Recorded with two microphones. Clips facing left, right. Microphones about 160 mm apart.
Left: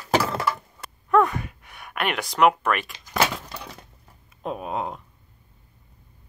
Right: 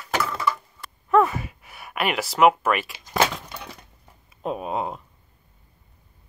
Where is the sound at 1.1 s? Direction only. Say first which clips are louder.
Right 1 dB; 5° right (ahead or behind).